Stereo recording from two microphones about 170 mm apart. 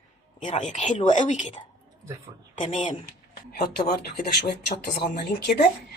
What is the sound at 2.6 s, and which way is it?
Speech, 35° left (ahead or behind).